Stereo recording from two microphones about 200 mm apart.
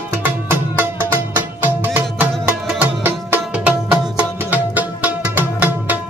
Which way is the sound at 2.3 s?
5° right (ahead or behind).